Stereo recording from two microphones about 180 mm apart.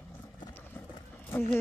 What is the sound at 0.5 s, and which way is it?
Horse, 10° left (ahead or behind).